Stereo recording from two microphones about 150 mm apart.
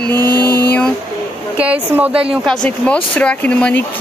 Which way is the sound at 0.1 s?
25° right (ahead or behind).